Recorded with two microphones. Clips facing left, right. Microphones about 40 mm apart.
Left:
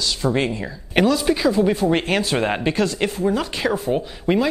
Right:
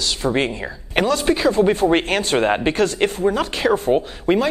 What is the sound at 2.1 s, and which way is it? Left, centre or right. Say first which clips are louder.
Speech: right 2 dB; centre.